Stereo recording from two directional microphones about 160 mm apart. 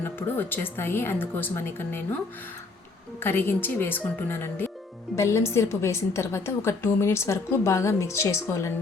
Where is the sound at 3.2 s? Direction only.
15° left (ahead or behind).